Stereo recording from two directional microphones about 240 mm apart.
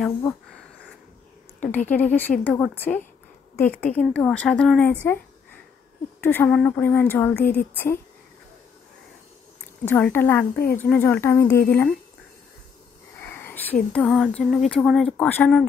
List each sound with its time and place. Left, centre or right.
1.6 s a woman's voice: centre
6.2 s a woman's voice: centre
9.8 s a woman's voice: centre
13.2 s sniff: centre
13.9 s a woman's voice: centre